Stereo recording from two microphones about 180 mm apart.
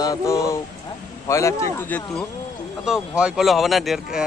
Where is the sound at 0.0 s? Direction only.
20° left (ahead or behind).